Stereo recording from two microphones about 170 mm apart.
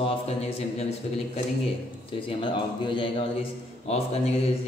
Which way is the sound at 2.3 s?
30° left (ahead or behind).